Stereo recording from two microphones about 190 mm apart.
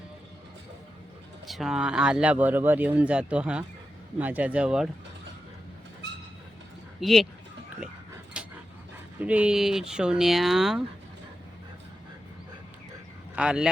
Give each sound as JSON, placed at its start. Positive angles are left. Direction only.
{"t": 1.5, "sound": "speech", "side_deg": 0}
{"t": 7.0, "sound": "speech", "side_deg": 0}
{"t": 8.4, "sound": "dog", "side_deg": -5}
{"t": 9.2, "sound": "speech", "side_deg": -5}
{"t": 13.3, "sound": "speech", "side_deg": -5}